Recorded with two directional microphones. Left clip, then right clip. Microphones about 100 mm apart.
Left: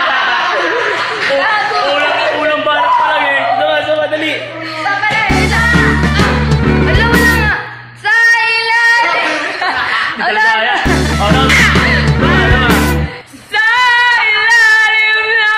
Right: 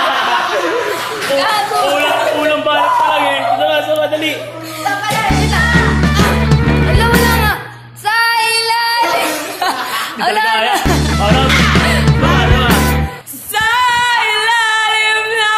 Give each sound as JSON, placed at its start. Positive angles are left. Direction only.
{"t": 5.3, "sound": "music", "side_deg": 0}
{"t": 8.1, "sound": "child singing", "side_deg": -60}
{"t": 10.2, "sound": "chuckle", "side_deg": -20}
{"t": 12.1, "sound": "music", "side_deg": 0}
{"t": 13.6, "sound": "female singing", "side_deg": -35}